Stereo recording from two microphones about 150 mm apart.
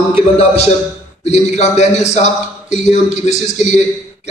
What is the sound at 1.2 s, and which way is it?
A man's voice, 45° left (ahead or behind).